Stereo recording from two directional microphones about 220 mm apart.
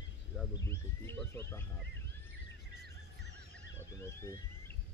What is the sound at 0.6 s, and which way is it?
Speech, 10° left (ahead or behind).